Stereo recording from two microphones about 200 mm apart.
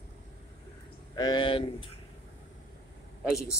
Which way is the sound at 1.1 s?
20° left (ahead or behind).